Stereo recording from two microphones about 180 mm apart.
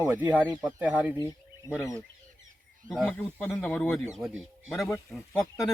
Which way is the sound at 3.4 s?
10° left (ahead or behind).